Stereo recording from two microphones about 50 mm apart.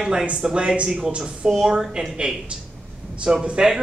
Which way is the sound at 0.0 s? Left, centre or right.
Centre.